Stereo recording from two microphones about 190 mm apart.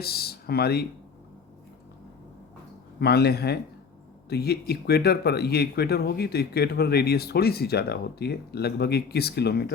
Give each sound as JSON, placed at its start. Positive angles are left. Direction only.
{"t": 0.0, "sound": "speech", "side_deg": 55}
{"t": 3.0, "sound": "speech", "side_deg": 55}